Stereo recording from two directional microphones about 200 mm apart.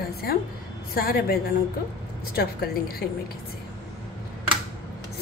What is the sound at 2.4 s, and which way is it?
Speech, 50° left (ahead or behind).